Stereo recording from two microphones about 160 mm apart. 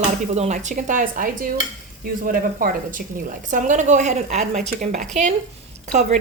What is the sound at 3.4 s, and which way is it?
Speech, 50° right (ahead or behind).